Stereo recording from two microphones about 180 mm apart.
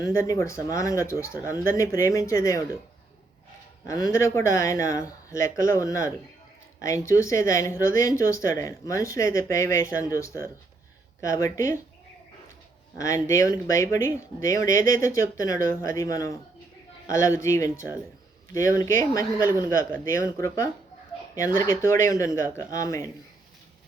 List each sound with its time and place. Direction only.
0.0 s speech: 15° left (ahead or behind)
3.8 s speech: 20° left (ahead or behind)
13.0 s speech: 15° left (ahead or behind)